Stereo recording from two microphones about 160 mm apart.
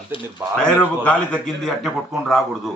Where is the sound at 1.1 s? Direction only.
5° left (ahead or behind).